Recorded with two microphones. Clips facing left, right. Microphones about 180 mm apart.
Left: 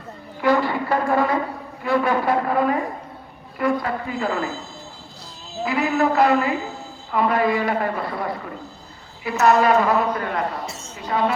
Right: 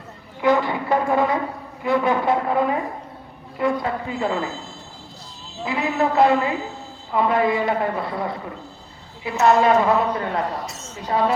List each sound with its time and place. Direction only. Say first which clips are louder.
0.4 s a man's voice: even; 20° right (ahead or behind)
5.6 s a man's voice: left 2 dB; 25° right (ahead or behind)